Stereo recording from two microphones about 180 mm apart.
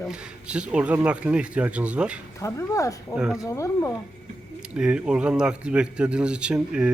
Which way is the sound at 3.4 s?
20° left (ahead or behind).